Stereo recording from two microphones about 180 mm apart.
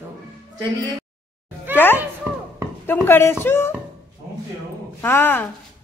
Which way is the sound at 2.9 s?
10° left (ahead or behind).